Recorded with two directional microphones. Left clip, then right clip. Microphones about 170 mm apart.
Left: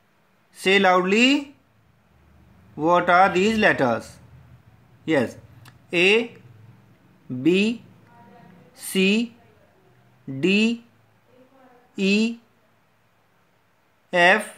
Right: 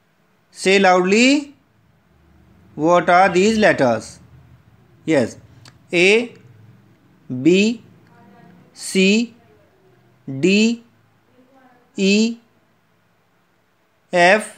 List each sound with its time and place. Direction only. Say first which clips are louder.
0.5 s speech: right 4 dB; 15° right (ahead or behind)
2.7 s speech: right 4 dB; 15° right (ahead or behind)
5.0 s a sound: right 4 dB; 15° right (ahead or behind)
7.4 s speech: right 5 dB; 15° right (ahead or behind)
8.7 s speech: right 5 dB; 15° right (ahead or behind)
10.3 s speech: right 4 dB; 15° right (ahead or behind)
11.9 s speech: right 5 dB; 15° right (ahead or behind)
14.1 s speech: right 4 dB; 15° right (ahead or behind)